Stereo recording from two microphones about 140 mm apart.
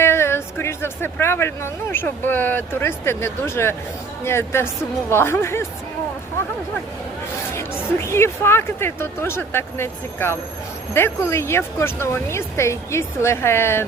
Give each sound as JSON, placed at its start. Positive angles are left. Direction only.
{"t": 0.0, "sound": "speech", "side_deg": 20}
{"t": 7.5, "sound": "speech", "side_deg": 20}